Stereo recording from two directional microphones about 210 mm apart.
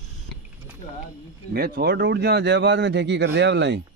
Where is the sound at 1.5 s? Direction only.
50° right (ahead or behind).